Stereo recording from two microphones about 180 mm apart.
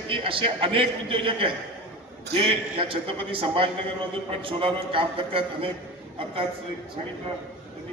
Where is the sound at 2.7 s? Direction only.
30° right (ahead or behind).